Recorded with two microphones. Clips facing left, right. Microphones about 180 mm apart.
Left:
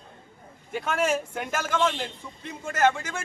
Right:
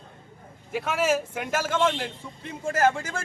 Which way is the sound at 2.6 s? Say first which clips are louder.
Right 1 dB; 30° right (ahead or behind).